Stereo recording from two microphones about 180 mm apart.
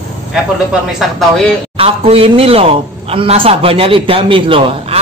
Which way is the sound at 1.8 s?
30° right (ahead or behind).